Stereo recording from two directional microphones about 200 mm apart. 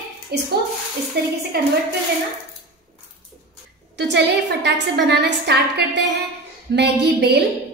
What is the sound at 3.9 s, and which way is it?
A woman's voice, 60° right (ahead or behind).